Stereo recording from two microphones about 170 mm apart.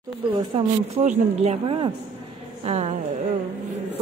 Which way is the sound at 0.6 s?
40° right (ahead or behind).